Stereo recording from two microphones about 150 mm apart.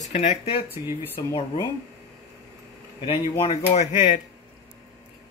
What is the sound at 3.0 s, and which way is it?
Speech, 40° left (ahead or behind).